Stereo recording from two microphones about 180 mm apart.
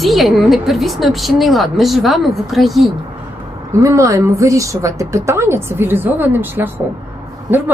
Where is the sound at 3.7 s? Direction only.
15° right (ahead or behind).